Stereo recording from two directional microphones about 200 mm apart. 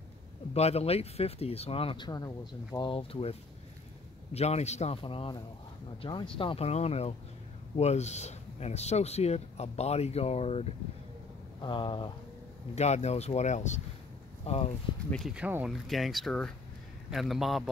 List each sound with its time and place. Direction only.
0.6 s speech: 30° left (ahead or behind)
15.0 s speech: centre (ahead or behind)